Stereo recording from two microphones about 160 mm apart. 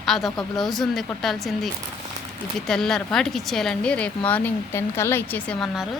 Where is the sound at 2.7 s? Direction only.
5° left (ahead or behind).